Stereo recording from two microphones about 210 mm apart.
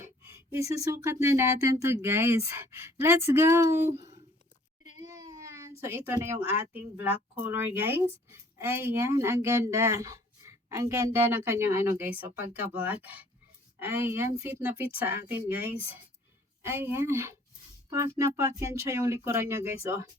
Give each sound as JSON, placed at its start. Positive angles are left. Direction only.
{"t": 0.0, "sound": "speech", "side_deg": -10}
{"t": 5.0, "sound": "baby cry", "side_deg": -15}
{"t": 6.7, "sound": "speech", "side_deg": -10}